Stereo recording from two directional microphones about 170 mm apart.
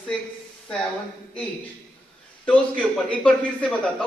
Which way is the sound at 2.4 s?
5° left (ahead or behind).